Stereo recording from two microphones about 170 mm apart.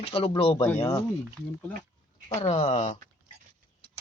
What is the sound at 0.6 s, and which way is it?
Speech, 15° left (ahead or behind).